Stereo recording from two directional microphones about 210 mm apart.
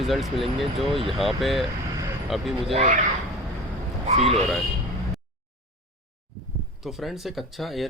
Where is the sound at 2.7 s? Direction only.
35° right (ahead or behind).